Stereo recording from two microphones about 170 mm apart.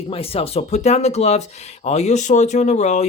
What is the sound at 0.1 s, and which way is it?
Speech, 35° left (ahead or behind).